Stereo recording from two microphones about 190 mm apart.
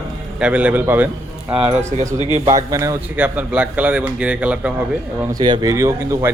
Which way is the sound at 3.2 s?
5° right (ahead or behind).